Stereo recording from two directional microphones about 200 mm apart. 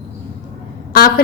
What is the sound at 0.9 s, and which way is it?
Speech, 45° left (ahead or behind).